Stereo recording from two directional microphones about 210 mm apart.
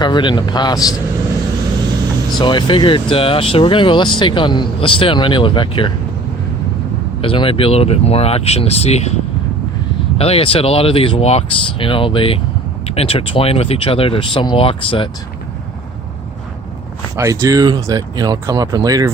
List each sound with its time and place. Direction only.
0.0 s speech: 20° left (ahead or behind)
2.4 s speech: 20° left (ahead or behind)
7.2 s speech: 25° left (ahead or behind)
10.2 s speech: 30° left (ahead or behind)
17.2 s speech: 15° right (ahead or behind)